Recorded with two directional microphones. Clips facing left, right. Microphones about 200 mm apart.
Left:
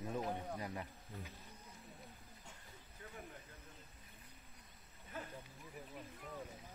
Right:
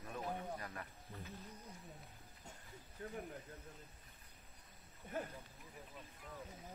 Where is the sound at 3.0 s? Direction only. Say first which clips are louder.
Right 8 dB; 50° right (ahead or behind).